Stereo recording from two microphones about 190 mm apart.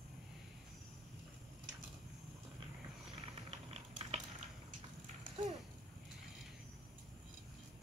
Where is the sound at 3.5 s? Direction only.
35° right (ahead or behind).